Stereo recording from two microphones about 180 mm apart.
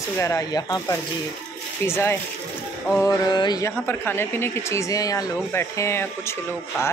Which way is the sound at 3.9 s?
10° left (ahead or behind).